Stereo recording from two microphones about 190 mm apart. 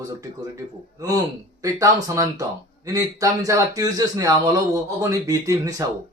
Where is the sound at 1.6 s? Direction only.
15° right (ahead or behind).